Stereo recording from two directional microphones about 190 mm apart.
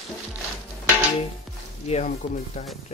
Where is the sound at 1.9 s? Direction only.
35° left (ahead or behind).